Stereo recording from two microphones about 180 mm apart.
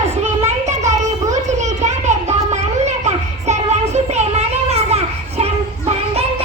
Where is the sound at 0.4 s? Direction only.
40° right (ahead or behind).